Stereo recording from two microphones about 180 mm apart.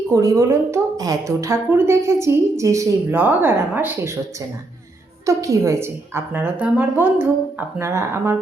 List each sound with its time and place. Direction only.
0.1 s a woman's voice: 20° right (ahead or behind)
5.2 s a woman's voice: 15° right (ahead or behind)